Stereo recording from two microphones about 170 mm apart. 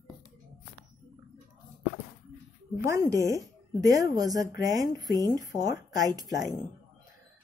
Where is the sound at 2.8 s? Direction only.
20° right (ahead or behind).